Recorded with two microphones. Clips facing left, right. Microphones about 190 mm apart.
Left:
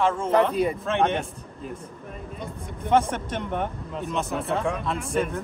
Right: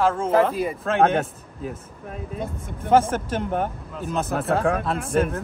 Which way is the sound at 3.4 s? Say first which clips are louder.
Right 3 dB; 35° right (ahead or behind).